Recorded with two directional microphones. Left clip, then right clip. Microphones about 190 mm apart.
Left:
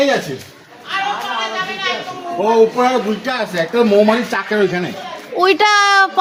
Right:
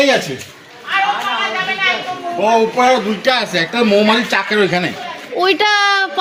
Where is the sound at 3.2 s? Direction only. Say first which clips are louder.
Right 4 dB; 40° right (ahead or behind).